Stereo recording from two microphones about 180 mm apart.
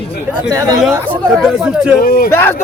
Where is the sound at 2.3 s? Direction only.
15° left (ahead or behind).